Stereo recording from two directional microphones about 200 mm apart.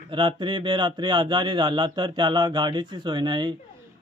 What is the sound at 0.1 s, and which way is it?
Speech, 25° right (ahead or behind).